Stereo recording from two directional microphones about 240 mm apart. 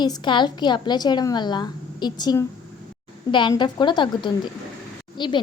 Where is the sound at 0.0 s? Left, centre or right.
Centre.